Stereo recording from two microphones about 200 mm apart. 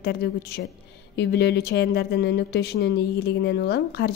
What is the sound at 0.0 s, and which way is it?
A woman's voice, 50° left (ahead or behind).